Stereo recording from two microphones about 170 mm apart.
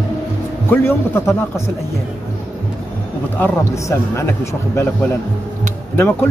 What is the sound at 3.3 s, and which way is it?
Speech, 15° left (ahead or behind).